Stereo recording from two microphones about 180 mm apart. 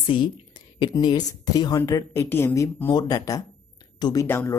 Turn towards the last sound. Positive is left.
turn(degrees=10)  # may be behind; listen again after turning